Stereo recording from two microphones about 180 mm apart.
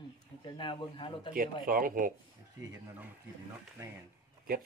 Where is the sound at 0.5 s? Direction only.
25° left (ahead or behind).